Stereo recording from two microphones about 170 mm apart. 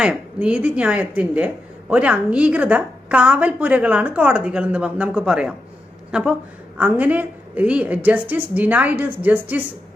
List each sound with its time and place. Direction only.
0.0 s a woman's voice: 5° right (ahead or behind)